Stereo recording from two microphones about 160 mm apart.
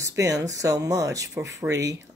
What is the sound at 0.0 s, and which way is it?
Speech, 20° right (ahead or behind).